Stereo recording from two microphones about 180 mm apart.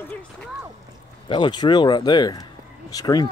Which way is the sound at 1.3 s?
25° left (ahead or behind).